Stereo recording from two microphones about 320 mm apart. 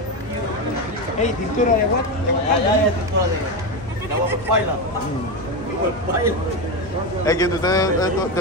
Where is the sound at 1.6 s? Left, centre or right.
Left.